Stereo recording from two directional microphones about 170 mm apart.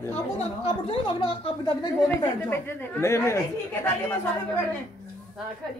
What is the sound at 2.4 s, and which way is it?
Speech, 10° left (ahead or behind).